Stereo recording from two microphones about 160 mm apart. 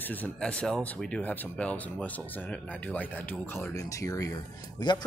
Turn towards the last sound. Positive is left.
turn(degrees=25)  # may be behind; listen again after turning